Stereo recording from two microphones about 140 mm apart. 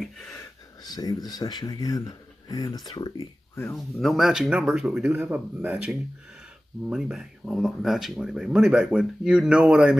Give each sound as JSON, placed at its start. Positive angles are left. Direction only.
{"t": 0.8, "sound": "speech", "side_deg": 30}
{"t": 3.7, "sound": "speech", "side_deg": 0}